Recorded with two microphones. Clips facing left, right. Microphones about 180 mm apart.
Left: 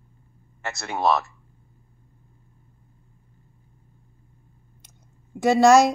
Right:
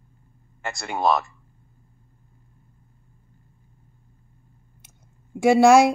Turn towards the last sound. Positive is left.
turn(degrees=-10)  # may be behind; listen again after turning